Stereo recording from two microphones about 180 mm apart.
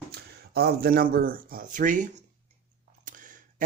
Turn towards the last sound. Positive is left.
turn(degrees=-45)  # may be behind; listen again after turning